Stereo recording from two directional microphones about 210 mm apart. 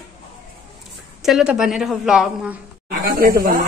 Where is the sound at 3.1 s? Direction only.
45° right (ahead or behind).